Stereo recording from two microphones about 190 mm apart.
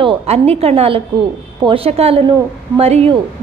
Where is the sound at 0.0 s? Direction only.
30° right (ahead or behind).